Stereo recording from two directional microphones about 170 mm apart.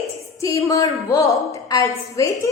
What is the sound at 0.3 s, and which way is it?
A woman's voice, 20° left (ahead or behind).